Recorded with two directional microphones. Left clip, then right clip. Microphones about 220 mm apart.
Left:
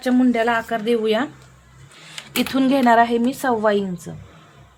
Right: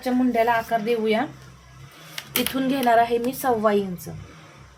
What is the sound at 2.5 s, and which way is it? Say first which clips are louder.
Speech: left 4 dB; 30° left (ahead or behind).